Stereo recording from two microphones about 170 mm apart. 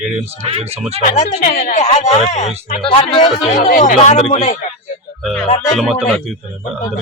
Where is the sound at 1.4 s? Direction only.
60° left (ahead or behind).